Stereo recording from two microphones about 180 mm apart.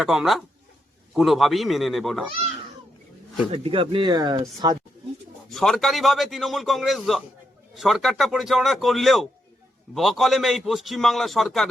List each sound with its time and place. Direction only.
0.0 s a man's voice: 5° right (ahead or behind)
3.5 s speech: 30° right (ahead or behind)
5.5 s a man's voice: centre (ahead or behind)